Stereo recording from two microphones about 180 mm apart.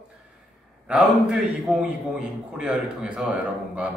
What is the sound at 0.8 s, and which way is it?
A man's voice, 5° right (ahead or behind).